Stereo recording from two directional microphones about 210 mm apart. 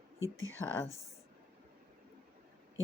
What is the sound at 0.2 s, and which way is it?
Speech, 70° left (ahead or behind).